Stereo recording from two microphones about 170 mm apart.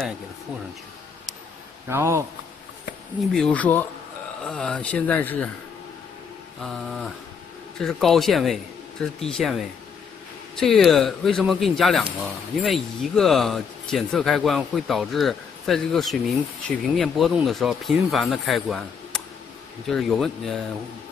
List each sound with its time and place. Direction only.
1.9 s speech: 15° right (ahead or behind)
3.3 s speech: 5° left (ahead or behind)
6.6 s speech: centre (ahead or behind)